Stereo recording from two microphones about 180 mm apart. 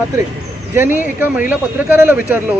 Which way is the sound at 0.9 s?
10° right (ahead or behind).